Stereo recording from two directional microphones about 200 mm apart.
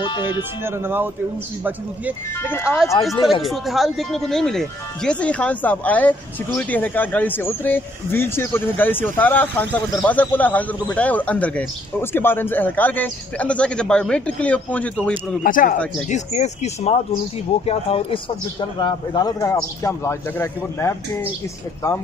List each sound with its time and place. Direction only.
0.0 s speech: 20° left (ahead or behind)
0.4 s speech: 10° right (ahead or behind)
2.4 s speech: 10° left (ahead or behind)
3.4 s speech: centre (ahead or behind)
15.4 s speech: 40° left (ahead or behind); by 21.3 s 10° left (ahead or behind)